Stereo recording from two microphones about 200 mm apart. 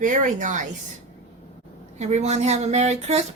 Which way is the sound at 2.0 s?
35° right (ahead or behind).